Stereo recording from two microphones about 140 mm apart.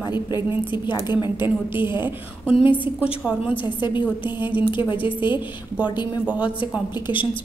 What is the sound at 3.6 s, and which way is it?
A woman's voice, 35° left (ahead or behind).